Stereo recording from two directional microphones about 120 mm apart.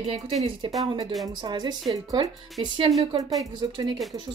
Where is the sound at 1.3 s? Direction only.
35° right (ahead or behind).